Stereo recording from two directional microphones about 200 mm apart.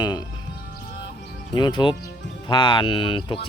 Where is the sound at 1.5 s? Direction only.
25° left (ahead or behind).